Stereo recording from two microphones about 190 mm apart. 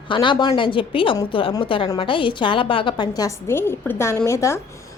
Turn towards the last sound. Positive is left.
turn(degrees=15)  # may be behind; listen again after turning